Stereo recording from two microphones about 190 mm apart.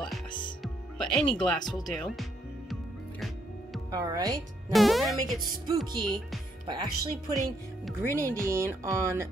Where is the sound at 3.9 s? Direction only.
20° right (ahead or behind).